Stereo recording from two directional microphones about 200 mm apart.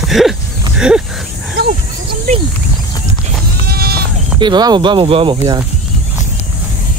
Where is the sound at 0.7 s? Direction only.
5° right (ahead or behind).